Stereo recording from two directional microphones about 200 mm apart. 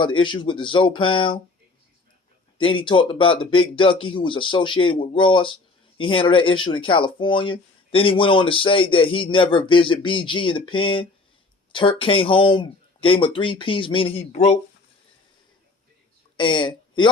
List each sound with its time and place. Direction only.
0.0 s speech: 25° left (ahead or behind)
2.5 s speech: 25° left (ahead or behind)
16.3 s speech: 25° left (ahead or behind)